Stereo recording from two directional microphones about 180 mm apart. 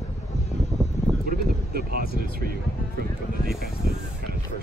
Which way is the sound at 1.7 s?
60° right (ahead or behind).